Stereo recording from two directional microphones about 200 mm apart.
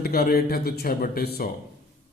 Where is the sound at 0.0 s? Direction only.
50° left (ahead or behind).